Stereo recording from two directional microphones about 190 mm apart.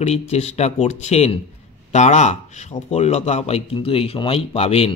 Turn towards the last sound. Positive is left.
turn(degrees=30)  # may be behind; listen again after turning